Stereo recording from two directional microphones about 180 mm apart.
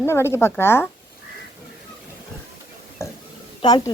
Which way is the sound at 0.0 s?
15° left (ahead or behind).